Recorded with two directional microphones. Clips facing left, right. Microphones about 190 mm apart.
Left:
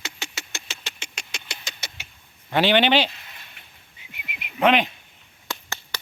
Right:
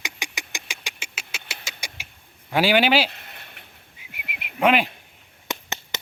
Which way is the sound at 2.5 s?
5° right (ahead or behind).